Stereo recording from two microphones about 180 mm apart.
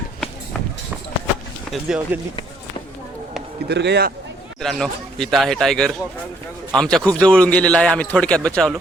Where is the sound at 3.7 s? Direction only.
70° right (ahead or behind).